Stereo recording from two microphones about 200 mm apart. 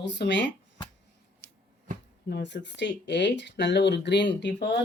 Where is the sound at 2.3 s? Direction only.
60° left (ahead or behind).